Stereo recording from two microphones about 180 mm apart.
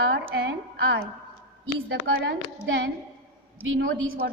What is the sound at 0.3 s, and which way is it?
Speech, 65° right (ahead or behind).